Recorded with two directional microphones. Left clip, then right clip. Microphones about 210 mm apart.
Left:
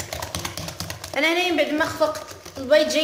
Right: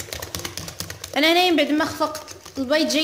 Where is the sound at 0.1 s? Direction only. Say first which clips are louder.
Left 1 dB; centre (ahead or behind).